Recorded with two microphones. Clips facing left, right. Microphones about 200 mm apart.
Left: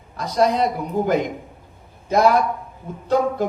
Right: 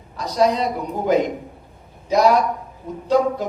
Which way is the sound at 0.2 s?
55° left (ahead or behind).